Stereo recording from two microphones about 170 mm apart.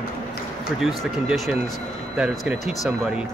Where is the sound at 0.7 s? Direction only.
Centre (ahead or behind).